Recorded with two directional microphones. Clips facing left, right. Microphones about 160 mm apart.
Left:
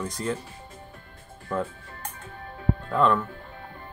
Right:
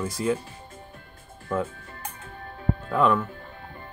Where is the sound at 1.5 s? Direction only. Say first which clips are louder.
Right 1 dB; centre (ahead or behind).